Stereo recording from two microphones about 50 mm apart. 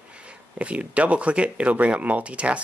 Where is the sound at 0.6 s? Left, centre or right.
Right.